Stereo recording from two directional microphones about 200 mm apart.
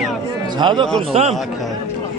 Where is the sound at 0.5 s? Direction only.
25° right (ahead or behind).